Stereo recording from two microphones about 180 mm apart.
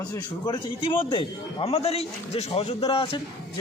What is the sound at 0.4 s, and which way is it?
A man's voice, 30° left (ahead or behind).